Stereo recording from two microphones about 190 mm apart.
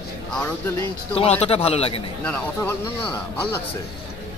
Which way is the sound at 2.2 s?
10° left (ahead or behind).